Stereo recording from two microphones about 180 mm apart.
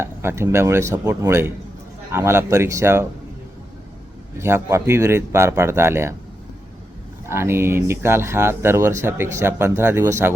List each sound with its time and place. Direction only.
0.0 s speech: 15° right (ahead or behind)
4.4 s speech: 15° right (ahead or behind)
7.3 s speech: 15° right (ahead or behind)